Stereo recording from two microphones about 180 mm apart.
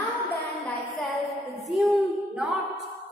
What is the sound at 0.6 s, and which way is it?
A woman's voice, centre (ahead or behind).